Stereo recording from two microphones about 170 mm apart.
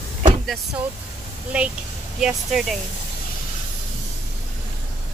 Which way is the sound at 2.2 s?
5° right (ahead or behind).